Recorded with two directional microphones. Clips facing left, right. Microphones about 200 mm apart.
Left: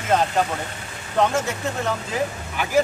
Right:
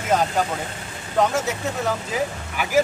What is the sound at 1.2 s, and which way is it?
Speech, centre (ahead or behind).